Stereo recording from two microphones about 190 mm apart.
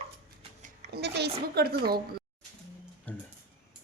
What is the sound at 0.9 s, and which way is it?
A woman's voice, 60° right (ahead or behind).